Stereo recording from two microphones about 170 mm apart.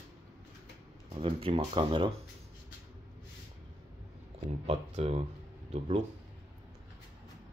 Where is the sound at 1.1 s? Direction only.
35° right (ahead or behind).